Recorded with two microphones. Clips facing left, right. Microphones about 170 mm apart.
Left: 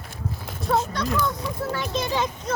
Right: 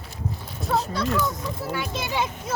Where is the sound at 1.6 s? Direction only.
10° right (ahead or behind).